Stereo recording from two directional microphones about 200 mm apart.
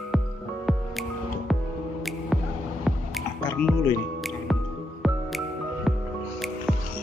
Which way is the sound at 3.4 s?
5° left (ahead or behind).